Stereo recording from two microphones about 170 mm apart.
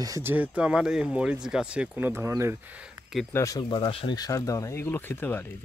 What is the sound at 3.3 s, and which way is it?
Speech, 15° left (ahead or behind).